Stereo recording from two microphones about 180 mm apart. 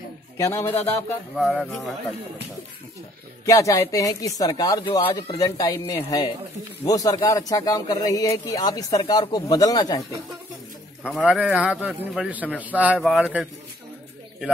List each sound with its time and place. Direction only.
0.4 s a man's voice: 15° left (ahead or behind)
1.3 s speech: centre (ahead or behind)
3.4 s a man's voice: 15° left (ahead or behind)
11.0 s a man's voice: centre (ahead or behind)